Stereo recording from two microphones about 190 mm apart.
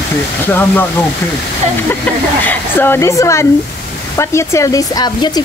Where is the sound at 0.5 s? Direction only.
10° left (ahead or behind).